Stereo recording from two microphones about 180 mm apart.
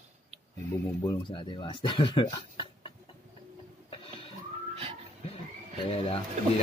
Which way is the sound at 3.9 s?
30° left (ahead or behind).